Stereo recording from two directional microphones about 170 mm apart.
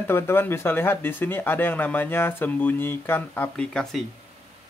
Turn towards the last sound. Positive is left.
turn(degrees=5)  # may be behind; listen again after turning